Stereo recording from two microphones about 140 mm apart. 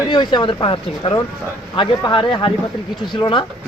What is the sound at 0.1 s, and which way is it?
Speech, 30° left (ahead or behind).